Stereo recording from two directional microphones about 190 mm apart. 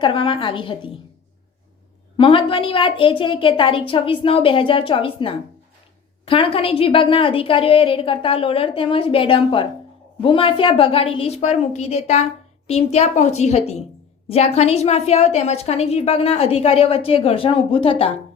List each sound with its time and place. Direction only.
0.0 s a woman's voice: 25° left (ahead or behind)
2.1 s a woman's voice: 25° left (ahead or behind)